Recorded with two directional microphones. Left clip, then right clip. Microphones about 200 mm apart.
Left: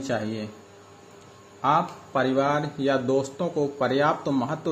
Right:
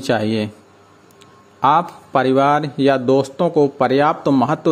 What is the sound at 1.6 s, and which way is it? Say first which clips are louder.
Speech: right 8 dB; 50° right (ahead or behind).